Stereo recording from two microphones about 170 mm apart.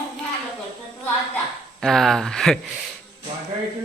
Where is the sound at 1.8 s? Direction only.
Centre (ahead or behind).